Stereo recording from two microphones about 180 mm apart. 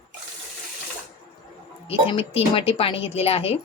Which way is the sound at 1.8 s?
30° left (ahead or behind).